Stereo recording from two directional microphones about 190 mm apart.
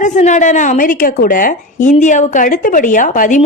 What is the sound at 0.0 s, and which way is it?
A woman's voice, 40° left (ahead or behind).